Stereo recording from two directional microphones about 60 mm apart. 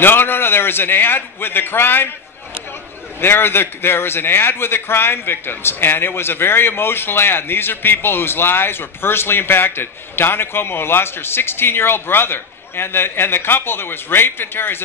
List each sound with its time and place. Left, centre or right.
0.0 s a man's voice: left
3.2 s a man's voice: left